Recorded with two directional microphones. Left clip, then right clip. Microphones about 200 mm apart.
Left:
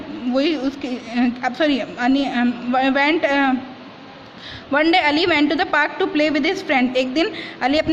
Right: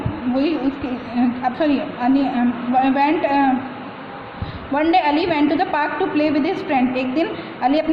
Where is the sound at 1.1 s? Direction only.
50° left (ahead or behind).